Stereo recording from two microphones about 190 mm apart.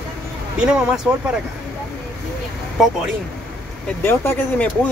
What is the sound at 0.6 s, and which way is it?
Speech, 5° right (ahead or behind).